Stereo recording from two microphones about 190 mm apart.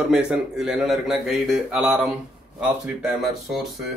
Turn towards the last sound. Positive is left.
turn(degrees=-5)  # may be behind; listen again after turning